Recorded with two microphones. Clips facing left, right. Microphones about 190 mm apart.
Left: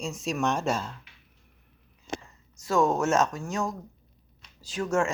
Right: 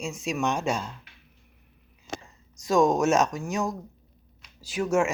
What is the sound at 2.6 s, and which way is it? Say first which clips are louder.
Speech: right 3 dB; 15° right (ahead or behind).